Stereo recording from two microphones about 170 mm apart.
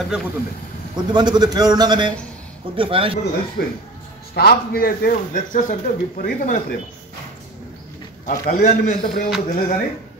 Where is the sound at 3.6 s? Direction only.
70° left (ahead or behind); by 6.6 s 50° left (ahead or behind).